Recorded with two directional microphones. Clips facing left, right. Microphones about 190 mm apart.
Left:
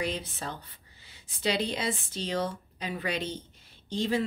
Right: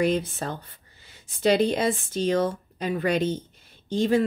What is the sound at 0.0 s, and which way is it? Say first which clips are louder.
Speech: right 9 dB; 50° right (ahead or behind).